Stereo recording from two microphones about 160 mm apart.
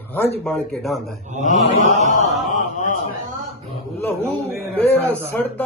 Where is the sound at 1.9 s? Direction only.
45° left (ahead or behind).